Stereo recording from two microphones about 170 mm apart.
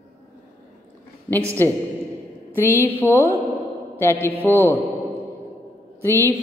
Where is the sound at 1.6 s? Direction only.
10° left (ahead or behind).